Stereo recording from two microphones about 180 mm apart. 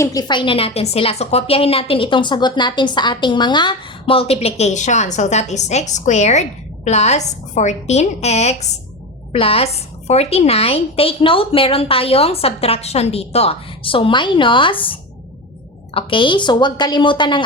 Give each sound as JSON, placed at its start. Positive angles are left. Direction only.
{"t": 0.0, "sound": "a woman's voice", "side_deg": 20}
{"t": 16.0, "sound": "speech", "side_deg": 30}